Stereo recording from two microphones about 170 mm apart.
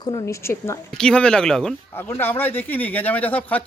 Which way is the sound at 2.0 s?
15° left (ahead or behind).